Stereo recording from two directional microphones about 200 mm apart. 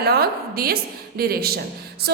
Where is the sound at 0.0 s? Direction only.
50° right (ahead or behind).